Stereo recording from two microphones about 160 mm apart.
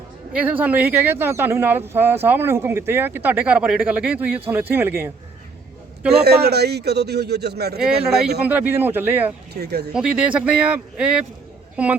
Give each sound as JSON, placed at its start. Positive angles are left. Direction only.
{"t": 0.3, "sound": "speech", "side_deg": -10}
{"t": 6.1, "sound": "a man's voice", "side_deg": -90}
{"t": 8.4, "sound": "speech", "side_deg": -10}
{"t": 9.5, "sound": "a man's voice", "side_deg": -90}
{"t": 9.9, "sound": "speech", "side_deg": -5}